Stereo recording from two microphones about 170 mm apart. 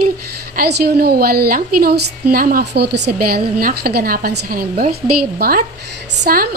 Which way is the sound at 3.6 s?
60° right (ahead or behind).